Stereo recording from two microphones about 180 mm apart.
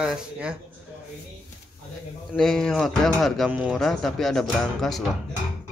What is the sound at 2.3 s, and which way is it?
Speech, centre (ahead or behind).